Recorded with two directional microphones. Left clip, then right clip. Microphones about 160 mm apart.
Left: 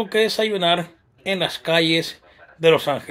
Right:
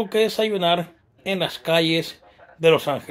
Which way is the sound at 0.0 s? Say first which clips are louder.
Left 1 dB; centre (ahead or behind).